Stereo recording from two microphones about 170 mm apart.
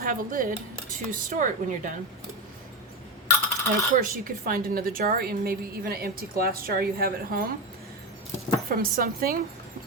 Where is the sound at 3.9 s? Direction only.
55° right (ahead or behind).